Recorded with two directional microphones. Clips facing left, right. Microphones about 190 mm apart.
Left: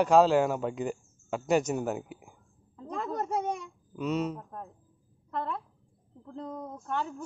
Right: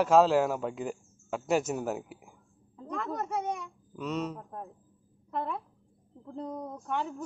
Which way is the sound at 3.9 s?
5° left (ahead or behind).